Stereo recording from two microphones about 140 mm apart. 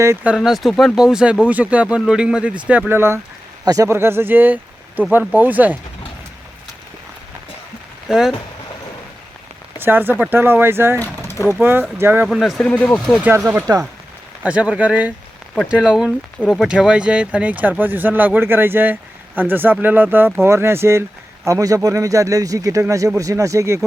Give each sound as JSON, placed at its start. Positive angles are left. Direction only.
{"t": 0.3, "sound": "speech", "side_deg": 0}
{"t": 8.0, "sound": "speech", "side_deg": -5}
{"t": 9.7, "sound": "speech", "side_deg": -15}
{"t": 11.0, "sound": "speech", "side_deg": 15}
{"t": 11.9, "sound": "speech", "side_deg": -15}
{"t": 12.3, "sound": "speech", "side_deg": 0}
{"t": 13.2, "sound": "speech", "side_deg": -15}
{"t": 14.4, "sound": "speech", "side_deg": -10}